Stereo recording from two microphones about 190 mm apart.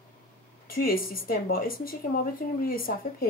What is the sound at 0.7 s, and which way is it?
Speech, 50° left (ahead or behind).